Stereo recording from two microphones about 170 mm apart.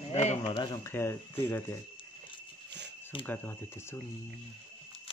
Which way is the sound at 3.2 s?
10° left (ahead or behind).